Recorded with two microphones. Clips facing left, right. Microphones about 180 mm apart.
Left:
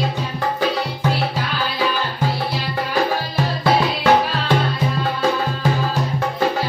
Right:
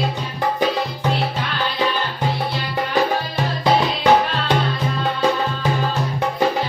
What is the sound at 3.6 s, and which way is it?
Music, 15° right (ahead or behind).